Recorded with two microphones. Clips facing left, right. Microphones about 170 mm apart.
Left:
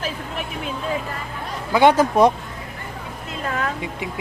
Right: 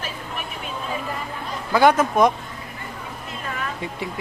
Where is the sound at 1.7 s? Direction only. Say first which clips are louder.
Left 2 dB; 25° left (ahead or behind).